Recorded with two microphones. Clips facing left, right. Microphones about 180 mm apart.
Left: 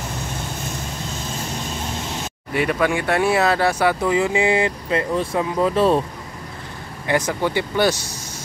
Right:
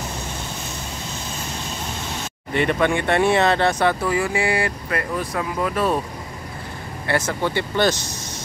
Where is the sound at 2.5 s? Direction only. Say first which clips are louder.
Even; 5° left (ahead or behind).